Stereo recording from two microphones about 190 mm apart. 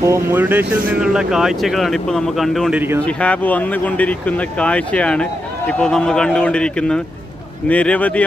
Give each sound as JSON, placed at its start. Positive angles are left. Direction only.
{"t": 0.0, "sound": "speech", "side_deg": -15}